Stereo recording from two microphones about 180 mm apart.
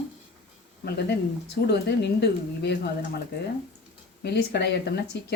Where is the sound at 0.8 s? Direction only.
65° left (ahead or behind).